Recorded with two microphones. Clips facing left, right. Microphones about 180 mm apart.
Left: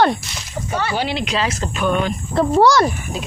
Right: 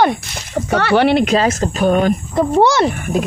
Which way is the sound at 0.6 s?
70° right (ahead or behind).